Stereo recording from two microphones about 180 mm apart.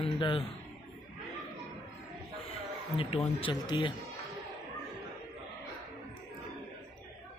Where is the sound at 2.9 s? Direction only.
30° left (ahead or behind).